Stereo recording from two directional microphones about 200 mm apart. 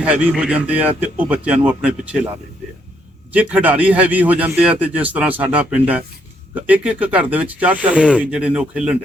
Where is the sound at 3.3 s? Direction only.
5° right (ahead or behind).